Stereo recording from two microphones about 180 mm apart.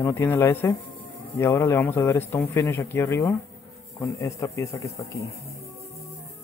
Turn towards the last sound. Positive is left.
turn(degrees=15)  # may be behind; listen again after turning